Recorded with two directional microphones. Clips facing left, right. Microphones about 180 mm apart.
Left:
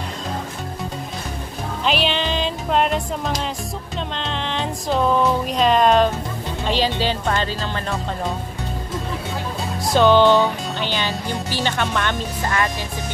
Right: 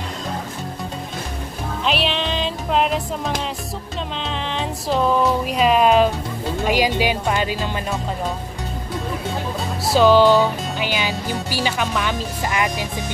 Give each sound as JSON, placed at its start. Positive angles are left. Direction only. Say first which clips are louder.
{"t": 1.9, "sound": "music", "louder": "left 1 dB", "side_deg": 0}
{"t": 4.1, "sound": "speech", "louder": "even", "side_deg": 0}
{"t": 9.8, "sound": "speech", "louder": "right 1 dB", "side_deg": -5}
{"t": 12.4, "sound": "speech", "louder": "right 1 dB", "side_deg": -15}